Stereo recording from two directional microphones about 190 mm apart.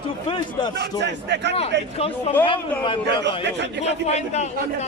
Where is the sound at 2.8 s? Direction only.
25° left (ahead or behind).